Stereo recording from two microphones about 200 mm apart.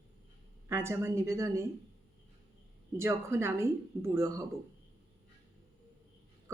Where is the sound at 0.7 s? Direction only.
10° right (ahead or behind).